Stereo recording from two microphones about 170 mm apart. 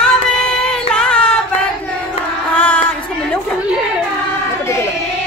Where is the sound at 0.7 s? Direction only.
5° left (ahead or behind).